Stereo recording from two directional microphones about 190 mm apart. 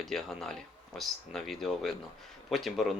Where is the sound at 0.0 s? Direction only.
Centre (ahead or behind).